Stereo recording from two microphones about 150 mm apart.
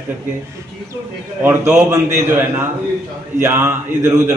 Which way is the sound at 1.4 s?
20° right (ahead or behind).